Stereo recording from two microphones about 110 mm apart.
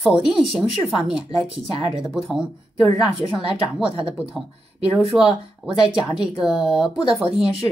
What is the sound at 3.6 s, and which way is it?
Speech, 5° right (ahead or behind).